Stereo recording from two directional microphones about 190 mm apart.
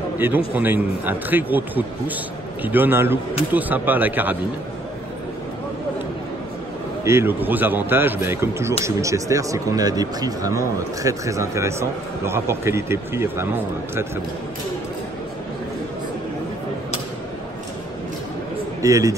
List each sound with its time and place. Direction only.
0.2 s speech: 10° right (ahead or behind)
7.1 s speech: 10° right (ahead or behind)
18.8 s a man's voice: 15° right (ahead or behind)